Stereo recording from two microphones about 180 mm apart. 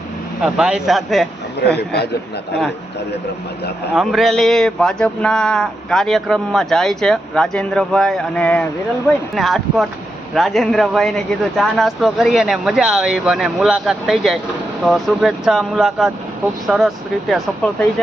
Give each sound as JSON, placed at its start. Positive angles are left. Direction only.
{"t": 0.4, "sound": "speech", "side_deg": -5}
{"t": 1.6, "sound": "a man's voice", "side_deg": 65}
{"t": 3.9, "sound": "speech", "side_deg": 0}